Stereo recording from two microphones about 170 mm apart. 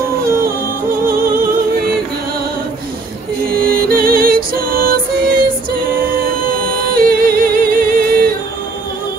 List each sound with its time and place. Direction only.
1.0 s music: 60° right (ahead or behind)
3.6 s music: 60° right (ahead or behind)
7.0 s yodeling: 60° right (ahead or behind)